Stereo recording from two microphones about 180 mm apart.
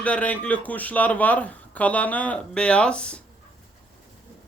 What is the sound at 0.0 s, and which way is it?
Speech, 5° left (ahead or behind).